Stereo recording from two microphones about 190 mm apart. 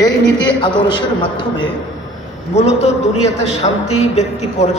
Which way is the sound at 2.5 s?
35° left (ahead or behind).